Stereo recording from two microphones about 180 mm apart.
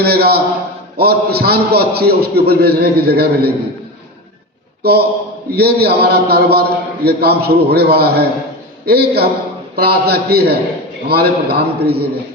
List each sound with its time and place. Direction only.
0.0 s a man's voice: 60° right (ahead or behind)
4.8 s a man's voice: 60° right (ahead or behind)